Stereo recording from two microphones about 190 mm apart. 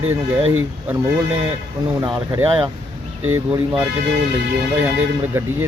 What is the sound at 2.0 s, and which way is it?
A man's voice, 15° right (ahead or behind).